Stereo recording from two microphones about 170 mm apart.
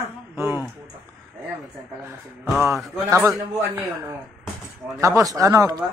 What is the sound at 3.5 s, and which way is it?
Speech, 15° right (ahead or behind).